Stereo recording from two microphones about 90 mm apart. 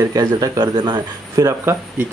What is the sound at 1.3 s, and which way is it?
Speech, 35° right (ahead or behind).